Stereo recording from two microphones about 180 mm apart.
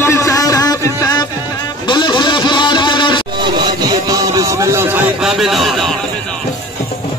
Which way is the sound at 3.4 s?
25° right (ahead or behind).